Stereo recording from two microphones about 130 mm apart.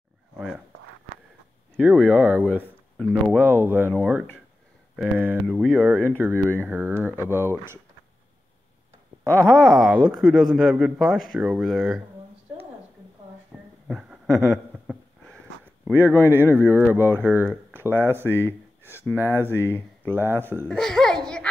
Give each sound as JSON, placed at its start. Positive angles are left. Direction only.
{"t": 1.8, "sound": "speech", "side_deg": -15}
{"t": 3.0, "sound": "speech", "side_deg": 5}
{"t": 3.3, "sound": "speech", "side_deg": -15}
{"t": 4.9, "sound": "speech", "side_deg": -5}
{"t": 5.7, "sound": "speech", "side_deg": -15}
{"t": 9.2, "sound": "speech", "side_deg": 10}
{"t": 13.5, "sound": "a sound", "side_deg": 0}
{"t": 15.9, "sound": "speech", "side_deg": -15}
{"t": 20.6, "sound": "music", "side_deg": 5}